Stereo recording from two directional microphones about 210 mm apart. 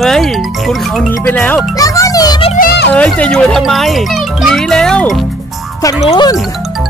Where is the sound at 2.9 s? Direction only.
5° left (ahead or behind).